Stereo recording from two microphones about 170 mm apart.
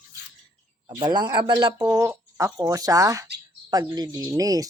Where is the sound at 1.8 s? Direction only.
15° right (ahead or behind).